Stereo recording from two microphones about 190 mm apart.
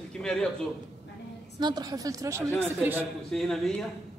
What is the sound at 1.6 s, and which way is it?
A woman's voice, 20° right (ahead or behind).